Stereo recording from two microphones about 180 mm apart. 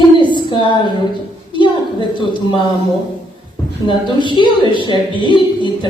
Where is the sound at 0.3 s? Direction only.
25° left (ahead or behind).